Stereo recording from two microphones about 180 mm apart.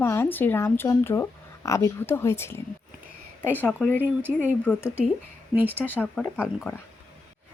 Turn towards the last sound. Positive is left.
turn(degrees=10)  # may be behind; listen again after turning